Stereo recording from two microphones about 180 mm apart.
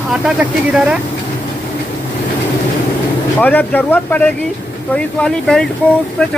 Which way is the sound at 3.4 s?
10° left (ahead or behind).